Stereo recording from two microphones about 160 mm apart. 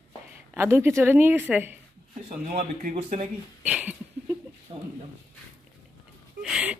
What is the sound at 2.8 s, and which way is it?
Speech, 50° right (ahead or behind).